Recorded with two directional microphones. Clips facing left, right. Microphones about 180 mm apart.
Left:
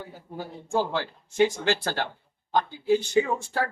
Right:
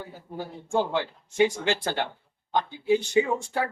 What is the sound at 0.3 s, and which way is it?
Speech, 20° right (ahead or behind).